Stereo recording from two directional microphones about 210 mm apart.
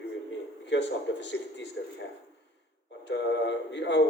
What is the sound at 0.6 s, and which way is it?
Speech, 55° left (ahead or behind).